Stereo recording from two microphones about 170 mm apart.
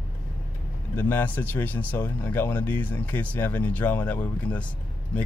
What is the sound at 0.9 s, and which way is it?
Speech, 10° left (ahead or behind).